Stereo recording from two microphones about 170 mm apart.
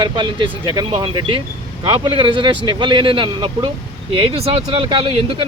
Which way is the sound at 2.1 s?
30° right (ahead or behind).